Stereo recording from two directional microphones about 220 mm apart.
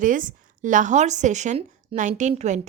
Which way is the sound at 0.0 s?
35° right (ahead or behind).